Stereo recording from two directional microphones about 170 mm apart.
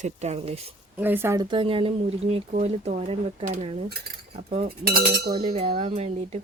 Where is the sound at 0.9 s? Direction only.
10° right (ahead or behind).